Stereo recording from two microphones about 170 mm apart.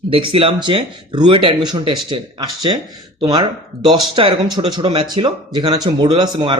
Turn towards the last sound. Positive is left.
turn(degrees=-25)  # may be behind; listen again after turning